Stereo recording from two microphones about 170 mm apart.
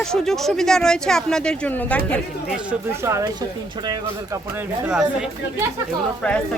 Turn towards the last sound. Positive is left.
turn(degrees=5)  # may be behind; listen again after turning